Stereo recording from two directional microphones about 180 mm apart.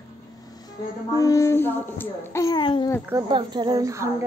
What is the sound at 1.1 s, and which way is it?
A child's voice, 20° left (ahead or behind).